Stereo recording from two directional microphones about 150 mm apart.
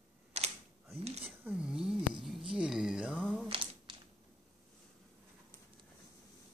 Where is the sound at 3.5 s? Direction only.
35° right (ahead or behind).